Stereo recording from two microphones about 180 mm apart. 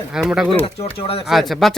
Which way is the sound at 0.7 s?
30° left (ahead or behind).